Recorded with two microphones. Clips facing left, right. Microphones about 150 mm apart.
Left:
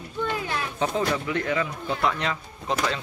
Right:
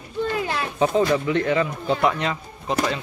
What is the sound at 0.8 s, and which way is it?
Speech, 25° right (ahead or behind).